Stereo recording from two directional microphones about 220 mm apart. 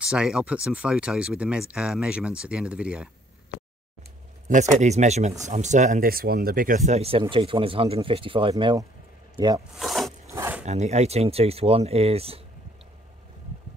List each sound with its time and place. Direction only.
0.0 s speech: 5° right (ahead or behind)
4.5 s speech: 35° right (ahead or behind); by 9.5 s 15° right (ahead or behind)
9.8 s zipper: centre (ahead or behind)
10.3 s a sound: 15° right (ahead or behind)
10.6 s speech: 30° right (ahead or behind)